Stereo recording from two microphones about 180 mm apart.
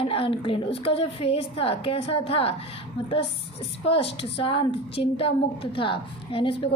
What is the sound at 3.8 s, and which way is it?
A child's voice, 30° left (ahead or behind).